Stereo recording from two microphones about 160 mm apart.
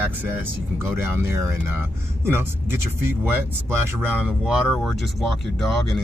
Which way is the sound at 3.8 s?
10° right (ahead or behind).